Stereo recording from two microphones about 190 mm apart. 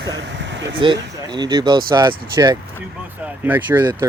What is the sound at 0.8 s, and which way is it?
Speech, 25° right (ahead or behind).